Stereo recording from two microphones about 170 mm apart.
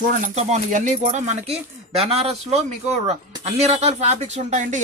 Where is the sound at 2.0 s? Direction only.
35° right (ahead or behind).